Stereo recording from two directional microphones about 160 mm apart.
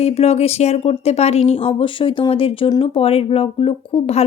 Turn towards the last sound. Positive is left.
turn(degrees=35)  # may be behind; listen again after turning